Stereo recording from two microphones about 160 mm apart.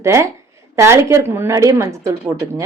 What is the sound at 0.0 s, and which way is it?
Speech, 15° right (ahead or behind).